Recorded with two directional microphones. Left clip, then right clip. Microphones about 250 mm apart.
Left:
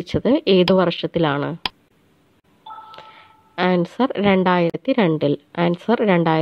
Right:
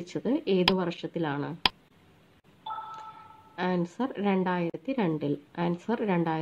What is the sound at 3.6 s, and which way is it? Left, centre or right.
A woman's voice, left.